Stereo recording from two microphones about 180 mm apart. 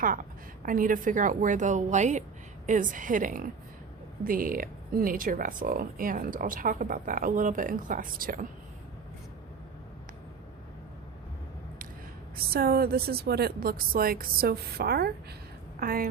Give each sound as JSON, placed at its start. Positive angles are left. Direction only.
{"t": 0.0, "sound": "speech", "side_deg": -50}
{"t": 12.4, "sound": "a woman's voice", "side_deg": -60}